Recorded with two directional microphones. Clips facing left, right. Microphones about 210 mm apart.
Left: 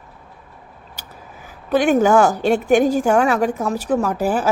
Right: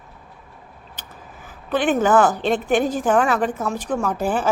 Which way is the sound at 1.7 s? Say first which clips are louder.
Left 3 dB; 10° left (ahead or behind).